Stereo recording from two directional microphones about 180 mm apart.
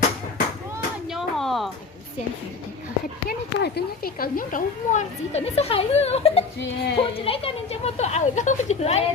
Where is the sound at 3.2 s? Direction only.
60° left (ahead or behind).